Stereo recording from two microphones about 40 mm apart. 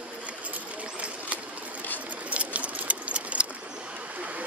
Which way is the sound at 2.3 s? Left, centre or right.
Right.